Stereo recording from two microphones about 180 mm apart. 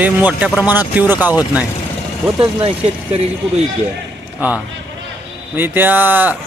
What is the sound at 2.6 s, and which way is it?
Speech, 30° right (ahead or behind).